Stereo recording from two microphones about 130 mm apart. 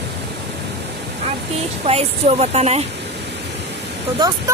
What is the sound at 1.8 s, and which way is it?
Speech, 50° right (ahead or behind).